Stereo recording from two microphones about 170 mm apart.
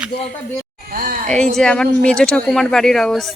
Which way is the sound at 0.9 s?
55° right (ahead or behind).